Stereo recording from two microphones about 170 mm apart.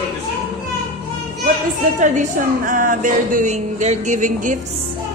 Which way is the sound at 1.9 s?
50° right (ahead or behind).